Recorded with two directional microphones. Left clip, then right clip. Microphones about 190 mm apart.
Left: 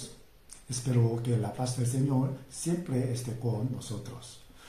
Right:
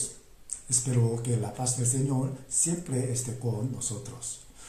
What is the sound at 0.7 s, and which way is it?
Speech, 15° right (ahead or behind).